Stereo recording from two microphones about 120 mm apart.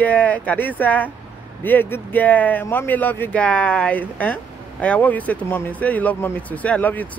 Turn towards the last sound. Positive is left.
turn(degrees=15)  # may be behind; listen again after turning